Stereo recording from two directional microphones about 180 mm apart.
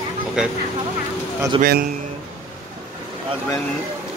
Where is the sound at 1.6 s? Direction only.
55° right (ahead or behind).